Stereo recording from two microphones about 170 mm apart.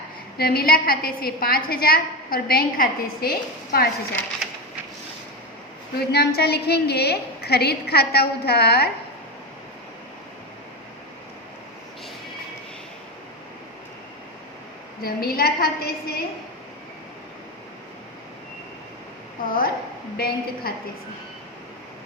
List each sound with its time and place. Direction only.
0.3 s a woman's voice: 65° left (ahead or behind)
4.4 s a sound: centre (ahead or behind)
6.1 s a woman's voice: 70° left (ahead or behind)
15.0 s a woman's voice: 60° left (ahead or behind)
19.5 s a woman's voice: 60° left (ahead or behind)